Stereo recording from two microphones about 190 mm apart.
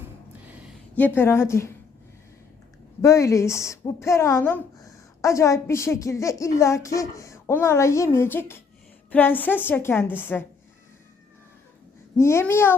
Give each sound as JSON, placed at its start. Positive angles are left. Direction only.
{"t": 0.4, "sound": "a sound", "side_deg": -5}
{"t": 0.9, "sound": "a woman's voice", "side_deg": 10}
{"t": 3.0, "sound": "a woman's voice", "side_deg": 15}
{"t": 12.1, "sound": "a woman's voice", "side_deg": 15}